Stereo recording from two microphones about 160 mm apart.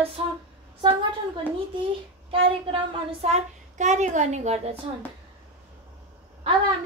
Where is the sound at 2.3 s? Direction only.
35° right (ahead or behind).